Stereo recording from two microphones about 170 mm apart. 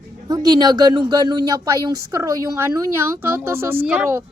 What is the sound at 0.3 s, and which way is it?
A woman's voice, 25° right (ahead or behind).